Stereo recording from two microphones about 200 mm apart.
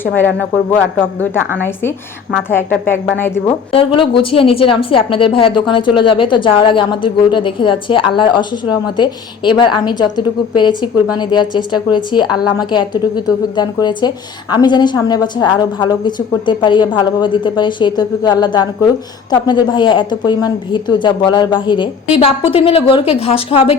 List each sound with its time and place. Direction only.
1.5 s speech: 10° left (ahead or behind)
3.4 s a woman's voice: 30° left (ahead or behind)